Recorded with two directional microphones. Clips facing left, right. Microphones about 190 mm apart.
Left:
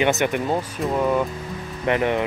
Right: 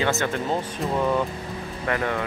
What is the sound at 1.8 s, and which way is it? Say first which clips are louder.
Speech: left 5 dB; 20° left (ahead or behind).